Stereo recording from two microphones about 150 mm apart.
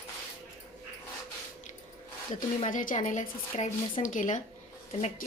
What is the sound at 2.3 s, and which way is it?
A woman's voice, 60° left (ahead or behind).